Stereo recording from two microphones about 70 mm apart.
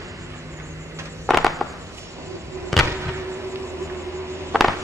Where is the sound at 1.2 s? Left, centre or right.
Centre.